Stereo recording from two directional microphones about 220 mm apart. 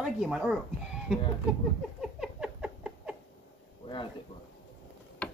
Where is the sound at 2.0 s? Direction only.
5° right (ahead or behind).